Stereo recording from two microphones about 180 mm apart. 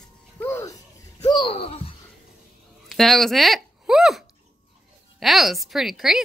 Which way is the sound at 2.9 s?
Centre (ahead or behind).